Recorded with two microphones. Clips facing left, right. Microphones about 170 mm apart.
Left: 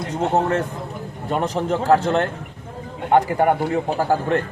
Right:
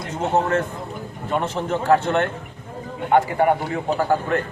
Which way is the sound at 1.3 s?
35° left (ahead or behind).